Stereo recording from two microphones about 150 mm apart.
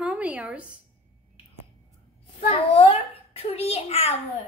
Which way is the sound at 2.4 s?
40° left (ahead or behind).